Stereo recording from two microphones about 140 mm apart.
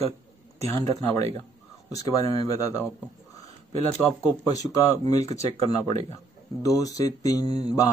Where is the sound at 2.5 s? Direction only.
25° left (ahead or behind).